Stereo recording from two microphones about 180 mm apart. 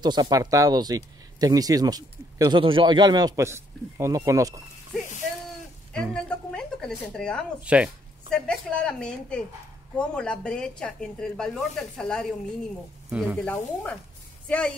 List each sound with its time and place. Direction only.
0.0 s speech: 25° right (ahead or behind)
6.1 s a woman's voice: 5° left (ahead or behind)
7.6 s speech: 5° right (ahead or behind)
8.3 s speech: 5° left (ahead or behind)
13.1 s speech: 10° right (ahead or behind)
13.4 s speech: 5° left (ahead or behind)